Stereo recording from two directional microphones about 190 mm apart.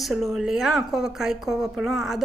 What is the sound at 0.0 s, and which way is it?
Speech, centre (ahead or behind).